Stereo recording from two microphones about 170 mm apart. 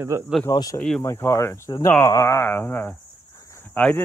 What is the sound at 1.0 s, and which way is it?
Speech, 20° left (ahead or behind).